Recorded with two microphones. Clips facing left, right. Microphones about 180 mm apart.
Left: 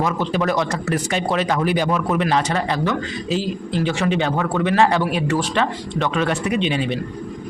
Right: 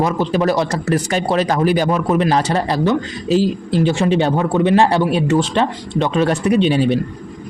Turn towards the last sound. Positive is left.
turn(degrees=-40)  # may be behind; listen again after turning